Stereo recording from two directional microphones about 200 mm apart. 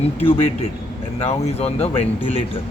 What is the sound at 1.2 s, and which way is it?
Speech, 30° left (ahead or behind).